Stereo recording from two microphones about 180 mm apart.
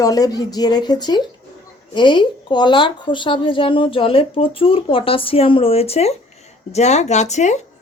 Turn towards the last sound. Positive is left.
turn(degrees=40)  # may be behind; listen again after turning